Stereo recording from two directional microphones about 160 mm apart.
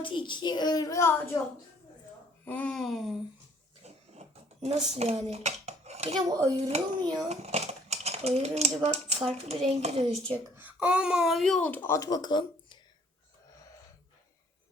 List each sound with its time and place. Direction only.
0.0 s a woman's voice: 30° left (ahead or behind)
2.4 s a sound: 10° left (ahead or behind)
3.8 s dishes: 40° right (ahead or behind)
6.2 s speech: 20° right (ahead or behind)
6.7 s a child's voice: 40° right (ahead or behind)
10.6 s speech: 10° right (ahead or behind); by 12.7 s 30° left (ahead or behind)